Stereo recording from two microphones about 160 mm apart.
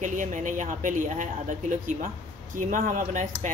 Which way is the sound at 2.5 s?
55° right (ahead or behind).